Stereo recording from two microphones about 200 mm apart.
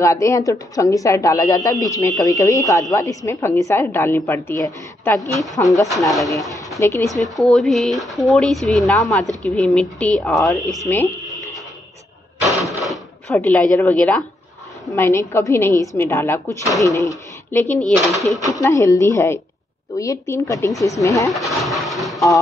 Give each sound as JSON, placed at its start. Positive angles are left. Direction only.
{"t": 0.0, "sound": "speech", "side_deg": 15}
{"t": 5.4, "sound": "speech", "side_deg": 0}
{"t": 6.8, "sound": "speech", "side_deg": 15}
{"t": 7.3, "sound": "speech", "side_deg": 0}
{"t": 10.9, "sound": "a sound", "side_deg": 10}
{"t": 12.4, "sound": "drawer open or close", "side_deg": 0}
{"t": 14.9, "sound": "speech", "side_deg": 15}
{"t": 18.4, "sound": "speech", "side_deg": 15}
{"t": 21.5, "sound": "a sound", "side_deg": 0}